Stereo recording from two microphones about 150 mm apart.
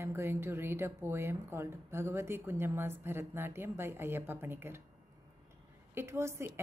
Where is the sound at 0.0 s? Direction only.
15° right (ahead or behind).